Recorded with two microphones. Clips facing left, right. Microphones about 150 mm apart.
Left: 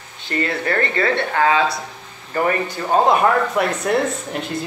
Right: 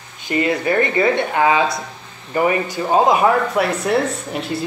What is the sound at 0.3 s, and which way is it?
Speech, 15° right (ahead or behind).